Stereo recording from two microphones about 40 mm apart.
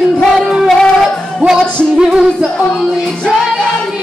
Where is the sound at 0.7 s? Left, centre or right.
Centre.